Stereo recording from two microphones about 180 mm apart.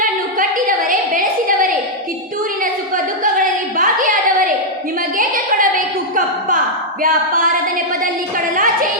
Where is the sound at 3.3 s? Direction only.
50° right (ahead or behind).